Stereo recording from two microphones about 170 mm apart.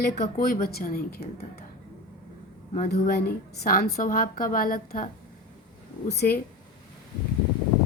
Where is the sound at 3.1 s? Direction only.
65° left (ahead or behind).